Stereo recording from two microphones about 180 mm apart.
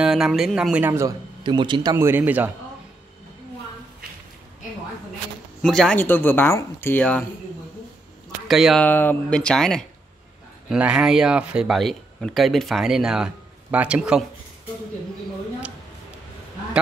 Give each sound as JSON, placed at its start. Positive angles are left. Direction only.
{"t": 0.0, "sound": "speech", "side_deg": -5}
{"t": 1.4, "sound": "a man's voice", "side_deg": -25}
{"t": 5.6, "sound": "speech", "side_deg": 5}
{"t": 8.5, "sound": "speech", "side_deg": 0}
{"t": 8.8, "sound": "speech", "side_deg": 10}